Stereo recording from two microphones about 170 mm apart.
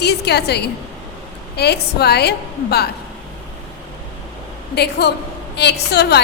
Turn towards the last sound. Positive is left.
turn(degrees=75)  # may be behind; listen again after turning